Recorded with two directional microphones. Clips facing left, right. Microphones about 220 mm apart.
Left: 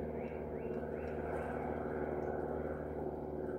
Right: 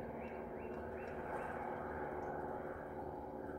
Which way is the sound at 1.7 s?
45° left (ahead or behind).